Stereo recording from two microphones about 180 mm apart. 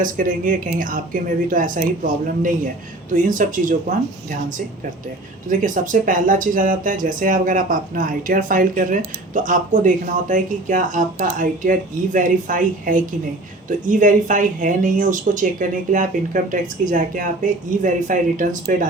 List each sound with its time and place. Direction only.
0.0 s speech: 50° right (ahead or behind)